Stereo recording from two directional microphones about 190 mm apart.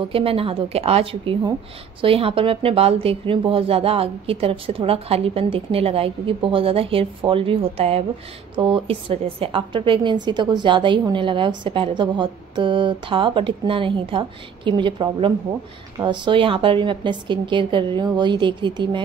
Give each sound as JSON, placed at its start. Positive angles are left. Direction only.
{"t": 0.1, "sound": "a woman's voice", "side_deg": -30}